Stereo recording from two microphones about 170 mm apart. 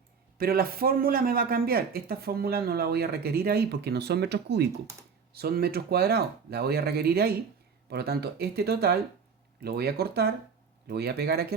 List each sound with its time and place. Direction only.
0.3 s a man's voice: 60° right (ahead or behind); by 4.7 s 80° right
5.3 s speech: 65° right (ahead or behind)